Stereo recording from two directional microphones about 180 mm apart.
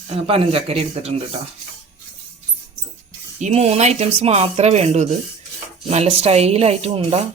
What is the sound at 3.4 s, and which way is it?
Speech, 35° right (ahead or behind).